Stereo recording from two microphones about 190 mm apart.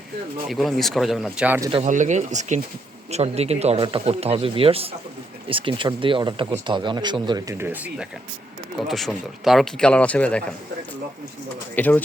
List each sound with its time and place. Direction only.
0.4 s speech: centre (ahead or behind)
1.8 s speech: 40° right (ahead or behind); by 10.4 s 5° left (ahead or behind)
11.7 s speech: 10° left (ahead or behind)